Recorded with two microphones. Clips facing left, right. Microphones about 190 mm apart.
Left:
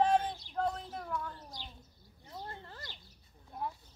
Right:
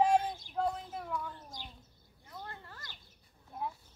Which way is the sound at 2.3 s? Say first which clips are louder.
Left 2 dB; 25° left (ahead or behind).